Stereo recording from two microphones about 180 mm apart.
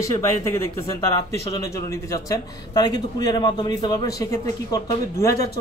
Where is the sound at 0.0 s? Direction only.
15° left (ahead or behind).